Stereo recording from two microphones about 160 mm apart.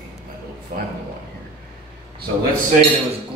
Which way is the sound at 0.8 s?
70° right (ahead or behind).